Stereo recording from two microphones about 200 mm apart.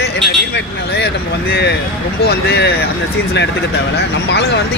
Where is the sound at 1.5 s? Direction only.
55° left (ahead or behind).